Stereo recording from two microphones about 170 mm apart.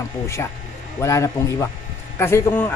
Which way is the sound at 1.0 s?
15° left (ahead or behind).